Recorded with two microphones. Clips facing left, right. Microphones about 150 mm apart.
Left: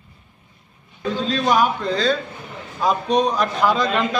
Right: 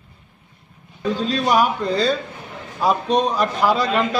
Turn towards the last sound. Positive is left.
turn(degrees=-5)  # may be behind; listen again after turning